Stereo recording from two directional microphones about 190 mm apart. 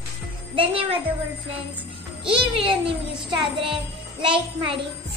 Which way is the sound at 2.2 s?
30° right (ahead or behind).